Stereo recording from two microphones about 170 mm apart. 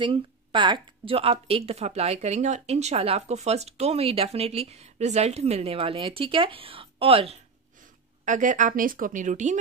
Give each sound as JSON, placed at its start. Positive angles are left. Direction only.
{"t": 0.0, "sound": "speech", "side_deg": -30}
{"t": 8.3, "sound": "speech", "side_deg": -50}